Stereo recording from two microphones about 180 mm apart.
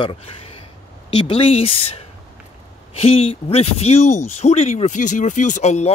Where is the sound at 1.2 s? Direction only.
30° left (ahead or behind).